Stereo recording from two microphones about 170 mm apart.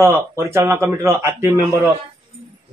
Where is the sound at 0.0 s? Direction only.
15° right (ahead or behind).